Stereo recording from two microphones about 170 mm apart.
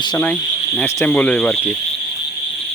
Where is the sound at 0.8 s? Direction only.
10° left (ahead or behind).